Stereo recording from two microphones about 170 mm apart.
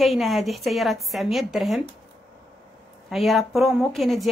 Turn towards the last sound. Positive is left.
turn(degrees=0)  # may be behind; listen again after turning